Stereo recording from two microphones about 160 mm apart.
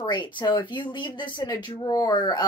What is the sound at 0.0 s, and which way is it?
Speech, 30° left (ahead or behind).